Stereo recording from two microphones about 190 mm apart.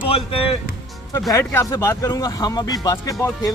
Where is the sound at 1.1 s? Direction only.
15° left (ahead or behind).